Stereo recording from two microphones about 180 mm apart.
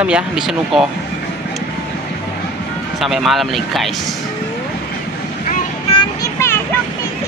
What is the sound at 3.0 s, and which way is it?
Speech, centre (ahead or behind).